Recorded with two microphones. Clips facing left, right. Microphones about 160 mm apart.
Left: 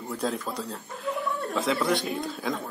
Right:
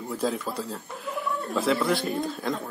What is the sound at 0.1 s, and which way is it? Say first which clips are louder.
Speech: right 2 dB; centre (ahead or behind).